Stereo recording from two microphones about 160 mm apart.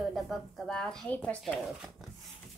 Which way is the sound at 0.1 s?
Centre (ahead or behind).